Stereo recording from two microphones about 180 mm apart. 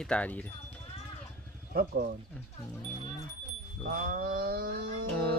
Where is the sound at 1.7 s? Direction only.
55° right (ahead or behind).